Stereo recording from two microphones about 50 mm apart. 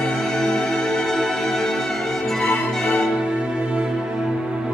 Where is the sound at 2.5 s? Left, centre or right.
Centre.